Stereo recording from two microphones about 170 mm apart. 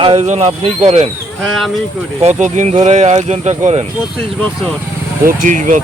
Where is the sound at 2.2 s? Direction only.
40° right (ahead or behind).